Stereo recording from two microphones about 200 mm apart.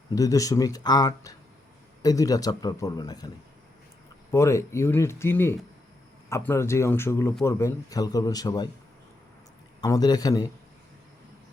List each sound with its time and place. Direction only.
0.1 s a man's voice: 15° left (ahead or behind)
4.3 s a man's voice: 15° left (ahead or behind)
9.8 s a man's voice: 20° left (ahead or behind)